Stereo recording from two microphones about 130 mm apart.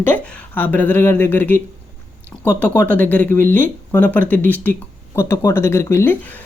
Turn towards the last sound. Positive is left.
turn(degrees=20)  # may be behind; listen again after turning